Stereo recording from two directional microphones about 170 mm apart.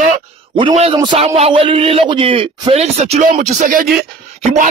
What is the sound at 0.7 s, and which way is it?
A man's voice, 35° right (ahead or behind).